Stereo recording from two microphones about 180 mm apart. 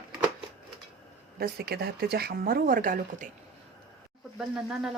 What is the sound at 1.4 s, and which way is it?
Speech, 60° right (ahead or behind).